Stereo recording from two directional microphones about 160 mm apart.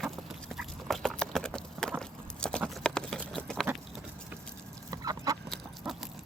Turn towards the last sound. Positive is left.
turn(degrees=0)  # may be behind; listen again after turning